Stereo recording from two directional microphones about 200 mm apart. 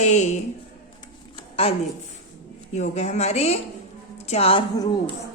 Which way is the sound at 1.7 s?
30° left (ahead or behind).